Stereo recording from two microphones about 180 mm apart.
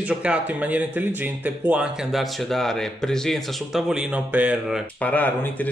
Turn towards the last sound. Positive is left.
turn(degrees=10)  # may be behind; listen again after turning